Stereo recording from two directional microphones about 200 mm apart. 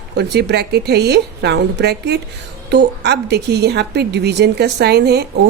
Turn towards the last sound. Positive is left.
turn(degrees=-55)  # may be behind; listen again after turning